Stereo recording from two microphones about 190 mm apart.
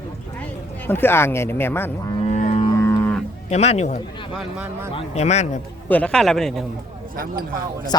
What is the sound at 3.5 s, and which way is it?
Speech, 35° left (ahead or behind).